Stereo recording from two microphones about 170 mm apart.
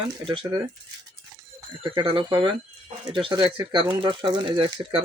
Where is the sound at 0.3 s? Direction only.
30° right (ahead or behind).